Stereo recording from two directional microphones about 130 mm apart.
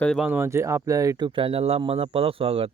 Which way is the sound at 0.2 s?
15° right (ahead or behind).